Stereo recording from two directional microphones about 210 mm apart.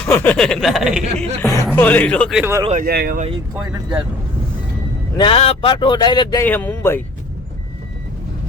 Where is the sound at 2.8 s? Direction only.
45° right (ahead or behind).